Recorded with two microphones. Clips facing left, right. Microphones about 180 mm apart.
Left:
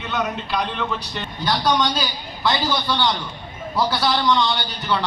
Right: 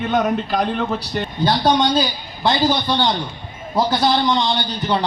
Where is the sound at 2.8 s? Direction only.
25° right (ahead or behind).